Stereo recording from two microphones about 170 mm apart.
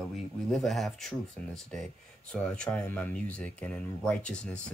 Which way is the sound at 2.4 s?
5° left (ahead or behind).